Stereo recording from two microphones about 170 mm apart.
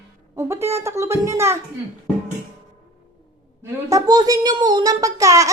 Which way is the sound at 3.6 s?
20° right (ahead or behind).